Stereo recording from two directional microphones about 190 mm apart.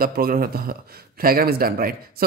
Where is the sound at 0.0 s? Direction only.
50° right (ahead or behind).